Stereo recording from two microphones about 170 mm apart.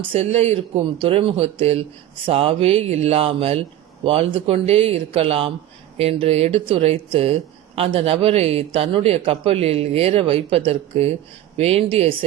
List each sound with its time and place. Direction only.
0.0 s a man's voice: 35° right (ahead or behind)